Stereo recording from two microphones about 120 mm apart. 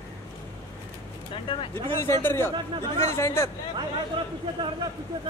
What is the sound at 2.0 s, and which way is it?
A man's voice, 20° left (ahead or behind).